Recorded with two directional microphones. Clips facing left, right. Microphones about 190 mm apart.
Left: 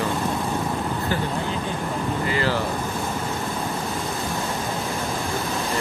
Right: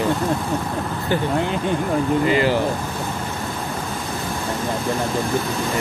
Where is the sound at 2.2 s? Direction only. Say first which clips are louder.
Right 3 dB; 20° right (ahead or behind).